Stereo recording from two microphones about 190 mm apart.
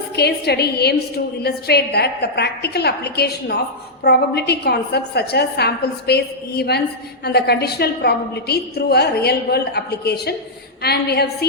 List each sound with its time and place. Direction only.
0.2 s a woman's voice: 60° left (ahead or behind)